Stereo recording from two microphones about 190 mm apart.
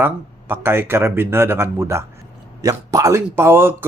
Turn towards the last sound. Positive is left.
turn(degrees=-10)  # may be behind; listen again after turning